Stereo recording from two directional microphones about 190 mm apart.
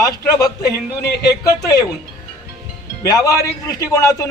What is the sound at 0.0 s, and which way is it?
A man's voice, 15° left (ahead or behind).